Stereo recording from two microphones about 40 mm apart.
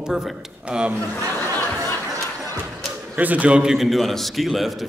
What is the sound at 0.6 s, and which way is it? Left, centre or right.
Speech, right.